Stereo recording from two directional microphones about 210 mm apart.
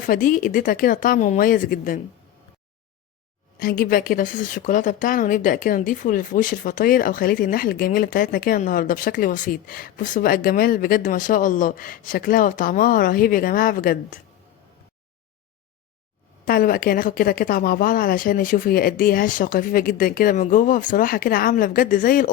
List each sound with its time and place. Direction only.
0.0 s speech: 40° left (ahead or behind)
3.6 s speech: 45° left (ahead or behind)
16.5 s a woman's voice: 45° left (ahead or behind)